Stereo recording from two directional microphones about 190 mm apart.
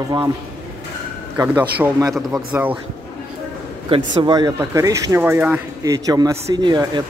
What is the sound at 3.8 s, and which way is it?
Speech, 25° right (ahead or behind).